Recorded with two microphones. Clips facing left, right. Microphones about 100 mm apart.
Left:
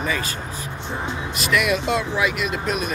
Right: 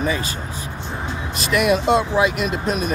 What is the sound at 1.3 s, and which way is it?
Speech, 30° right (ahead or behind).